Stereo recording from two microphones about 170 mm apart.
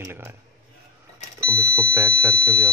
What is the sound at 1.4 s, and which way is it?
Speech, 15° right (ahead or behind).